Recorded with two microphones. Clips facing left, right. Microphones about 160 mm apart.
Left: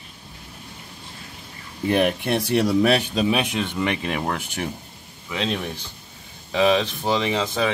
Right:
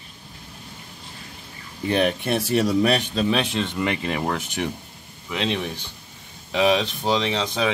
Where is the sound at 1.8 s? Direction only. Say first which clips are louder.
Left 1 dB; centre (ahead or behind); by 4.2 s 20° left (ahead or behind).